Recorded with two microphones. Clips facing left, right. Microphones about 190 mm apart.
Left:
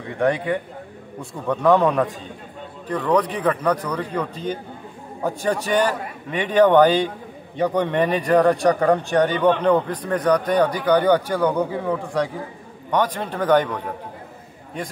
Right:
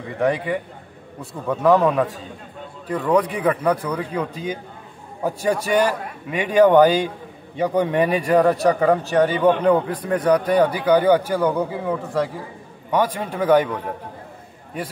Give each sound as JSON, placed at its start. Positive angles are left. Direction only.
{"t": 0.2, "sound": "a man's voice", "side_deg": 0}